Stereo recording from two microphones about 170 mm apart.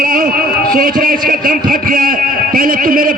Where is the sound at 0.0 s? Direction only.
55° right (ahead or behind).